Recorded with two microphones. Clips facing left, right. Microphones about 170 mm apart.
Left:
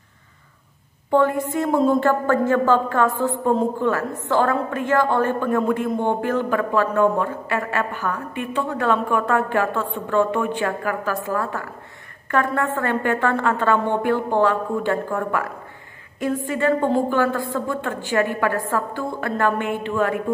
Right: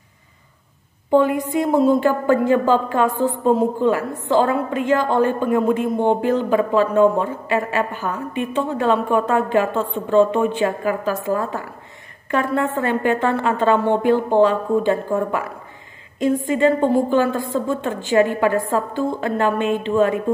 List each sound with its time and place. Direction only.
1.1 s a woman's voice: 20° right (ahead or behind)